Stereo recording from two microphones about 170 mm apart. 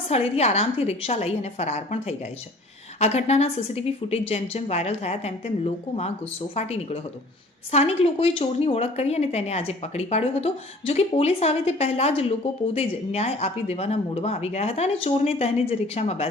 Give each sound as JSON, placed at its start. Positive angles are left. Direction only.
{"t": 0.1, "sound": "a woman's voice", "side_deg": 40}